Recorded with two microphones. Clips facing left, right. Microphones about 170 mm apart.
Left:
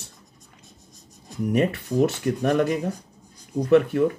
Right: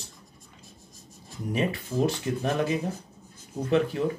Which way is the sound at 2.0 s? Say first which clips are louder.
Left 4 dB; 65° left (ahead or behind).